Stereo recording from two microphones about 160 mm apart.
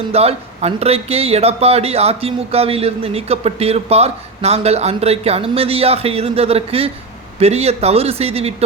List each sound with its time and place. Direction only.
0.1 s speech: 40° right (ahead or behind)